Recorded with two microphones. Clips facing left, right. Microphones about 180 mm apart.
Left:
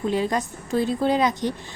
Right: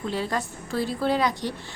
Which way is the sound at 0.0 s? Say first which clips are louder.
Left 5 dB; 15° left (ahead or behind).